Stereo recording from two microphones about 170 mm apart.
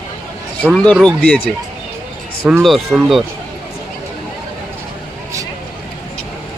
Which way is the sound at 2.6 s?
Centre (ahead or behind).